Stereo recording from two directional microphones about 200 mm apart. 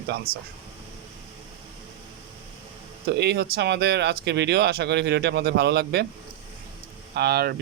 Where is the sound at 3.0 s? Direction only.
55° right (ahead or behind).